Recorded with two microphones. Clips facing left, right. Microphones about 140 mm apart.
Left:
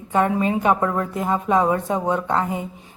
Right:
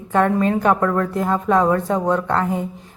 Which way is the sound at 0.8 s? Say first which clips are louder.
Right 3 dB; 20° left (ahead or behind).